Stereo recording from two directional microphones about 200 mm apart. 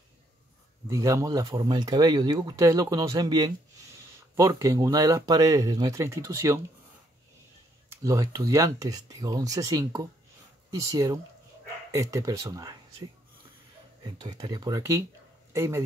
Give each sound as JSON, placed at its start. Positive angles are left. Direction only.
{"t": 0.8, "sound": "speech", "side_deg": -15}
{"t": 8.0, "sound": "speech", "side_deg": -15}
{"t": 14.0, "sound": "speech", "side_deg": -20}